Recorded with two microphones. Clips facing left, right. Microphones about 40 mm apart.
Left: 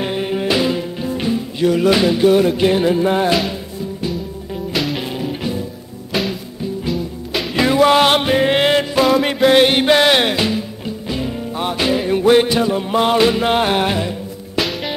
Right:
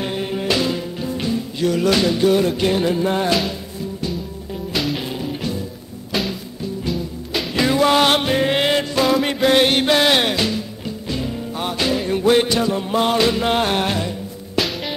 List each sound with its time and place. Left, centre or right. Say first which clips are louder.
0.0 s music: left 3 dB; centre
4.7 s music: left 2 dB; centre
5.3 s music: left 2 dB; centre